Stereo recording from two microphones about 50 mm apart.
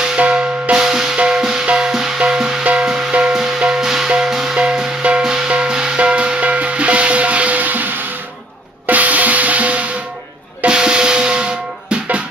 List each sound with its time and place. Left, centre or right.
0.2 s music: right
2.6 s music: right
10.6 s music: centre